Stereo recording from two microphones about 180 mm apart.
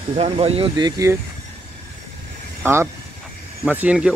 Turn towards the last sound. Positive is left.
turn(degrees=-10)  # may be behind; listen again after turning